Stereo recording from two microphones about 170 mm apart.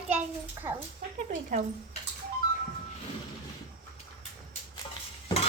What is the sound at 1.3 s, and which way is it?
Speech, 50° right (ahead or behind).